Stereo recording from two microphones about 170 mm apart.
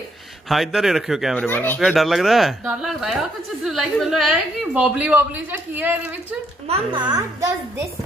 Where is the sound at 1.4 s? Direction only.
10° left (ahead or behind).